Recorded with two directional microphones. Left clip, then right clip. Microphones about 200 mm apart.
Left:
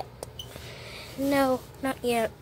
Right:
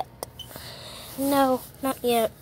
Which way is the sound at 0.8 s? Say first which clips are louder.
Right 2 dB; 15° right (ahead or behind).